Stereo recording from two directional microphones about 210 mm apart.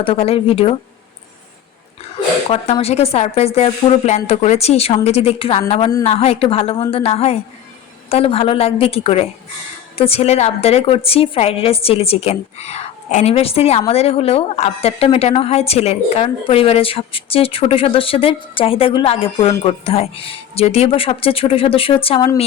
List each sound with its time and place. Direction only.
0.0 s a woman's voice: 25° left (ahead or behind)
2.5 s a woman's voice: 30° left (ahead or behind)